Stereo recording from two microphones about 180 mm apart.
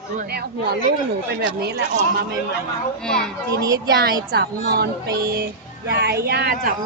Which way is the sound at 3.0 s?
5° left (ahead or behind).